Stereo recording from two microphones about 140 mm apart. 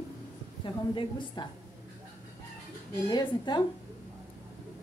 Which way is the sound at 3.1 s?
30° left (ahead or behind).